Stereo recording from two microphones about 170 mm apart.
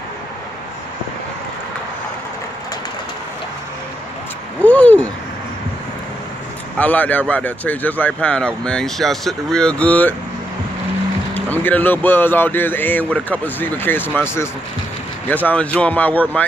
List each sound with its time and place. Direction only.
4.6 s a sound: 10° left (ahead or behind)
6.8 s speech: 10° left (ahead or behind)
11.3 s speech: 10° left (ahead or behind)